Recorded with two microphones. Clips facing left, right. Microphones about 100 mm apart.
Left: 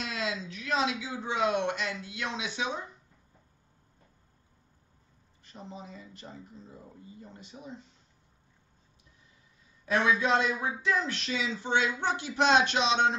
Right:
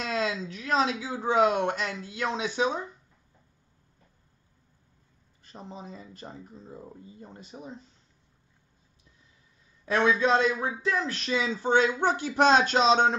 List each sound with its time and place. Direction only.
0.0 s a man's voice: 40° right (ahead or behind)
5.5 s a man's voice: 35° right (ahead or behind)
9.8 s a man's voice: 30° right (ahead or behind)